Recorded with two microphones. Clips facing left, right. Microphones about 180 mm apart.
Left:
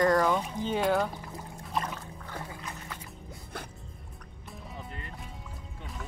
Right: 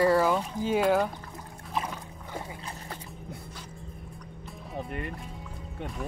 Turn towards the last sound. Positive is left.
turn(degrees=-60)  # may be behind; listen again after turning